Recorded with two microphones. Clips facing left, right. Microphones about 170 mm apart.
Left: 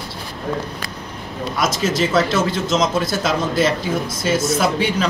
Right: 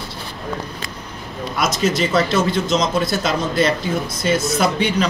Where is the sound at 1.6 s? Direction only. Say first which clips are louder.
Even; centre (ahead or behind).